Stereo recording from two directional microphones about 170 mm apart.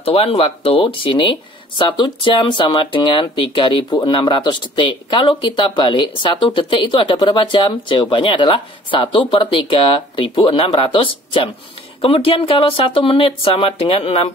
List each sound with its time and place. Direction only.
0.0 s speech: 35° left (ahead or behind)